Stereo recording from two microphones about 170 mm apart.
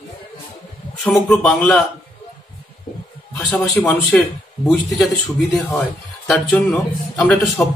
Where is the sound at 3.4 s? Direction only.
10° left (ahead or behind).